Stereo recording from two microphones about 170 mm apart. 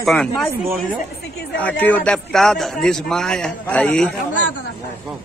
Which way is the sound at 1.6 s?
10° left (ahead or behind).